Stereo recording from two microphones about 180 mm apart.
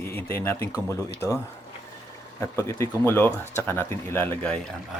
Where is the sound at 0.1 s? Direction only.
10° left (ahead or behind).